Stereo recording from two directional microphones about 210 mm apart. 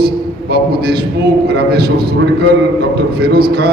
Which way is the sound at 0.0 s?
50° right (ahead or behind).